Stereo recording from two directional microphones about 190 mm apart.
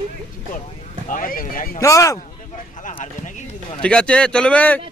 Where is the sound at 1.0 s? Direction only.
45° left (ahead or behind).